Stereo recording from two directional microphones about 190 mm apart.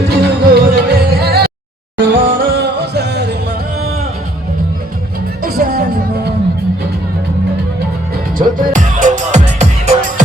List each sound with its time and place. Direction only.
0.1 s music: 60° right (ahead or behind)
5.4 s music: 50° right (ahead or behind)
8.4 s music: 45° right (ahead or behind)